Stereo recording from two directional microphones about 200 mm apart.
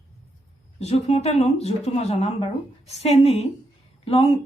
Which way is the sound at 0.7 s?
30° left (ahead or behind).